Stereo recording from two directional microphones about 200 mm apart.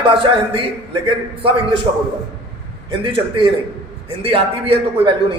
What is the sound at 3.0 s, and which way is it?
A man's voice, 25° right (ahead or behind).